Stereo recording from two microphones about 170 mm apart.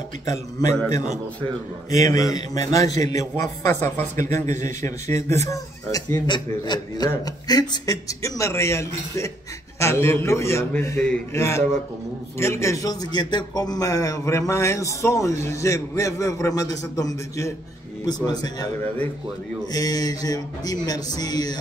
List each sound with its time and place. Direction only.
0.6 s a man's voice: 20° left (ahead or behind)
19.7 s a man's voice: 20° left (ahead or behind)